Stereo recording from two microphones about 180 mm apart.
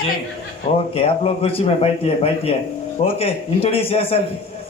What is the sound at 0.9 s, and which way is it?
A man's voice, 30° left (ahead or behind).